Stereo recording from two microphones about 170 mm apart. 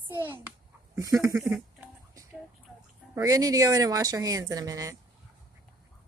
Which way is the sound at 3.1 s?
20° right (ahead or behind).